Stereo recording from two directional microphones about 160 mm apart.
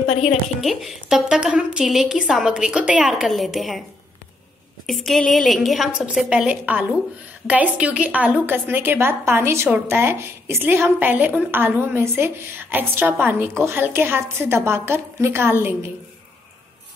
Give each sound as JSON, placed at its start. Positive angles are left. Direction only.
{"t": 0.1, "sound": "a woman's voice", "side_deg": 45}
{"t": 0.6, "sound": "a woman's voice", "side_deg": 0}
{"t": 4.8, "sound": "a woman's voice", "side_deg": 0}